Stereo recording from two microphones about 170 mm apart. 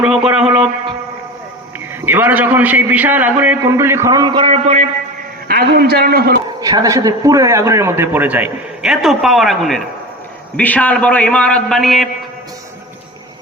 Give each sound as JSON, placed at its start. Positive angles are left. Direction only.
{"t": 0.0, "sound": "music", "side_deg": -5}
{"t": 2.0, "sound": "a man's voice", "side_deg": -10}
{"t": 5.5, "sound": "a man's voice", "side_deg": -65}
{"t": 6.6, "sound": "a man's voice", "side_deg": -20}